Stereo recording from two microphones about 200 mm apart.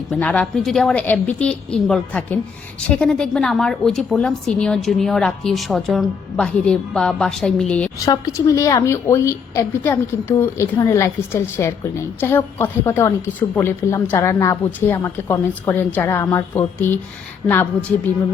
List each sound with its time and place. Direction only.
0.1 s a woman's voice: 5° left (ahead or behind)
8.0 s a woman's voice: 15° left (ahead or behind)